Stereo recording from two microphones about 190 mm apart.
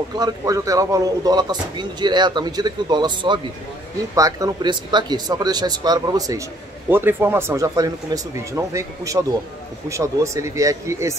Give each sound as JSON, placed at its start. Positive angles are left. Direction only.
{"t": 0.1, "sound": "speech", "side_deg": -20}